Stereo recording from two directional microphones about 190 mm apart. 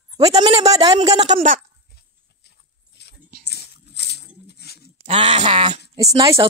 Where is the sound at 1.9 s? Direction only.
60° left (ahead or behind).